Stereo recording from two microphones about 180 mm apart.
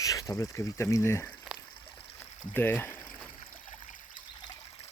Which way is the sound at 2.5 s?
10° left (ahead or behind).